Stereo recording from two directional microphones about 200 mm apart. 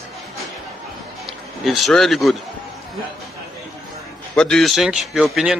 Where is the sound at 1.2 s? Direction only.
Centre (ahead or behind).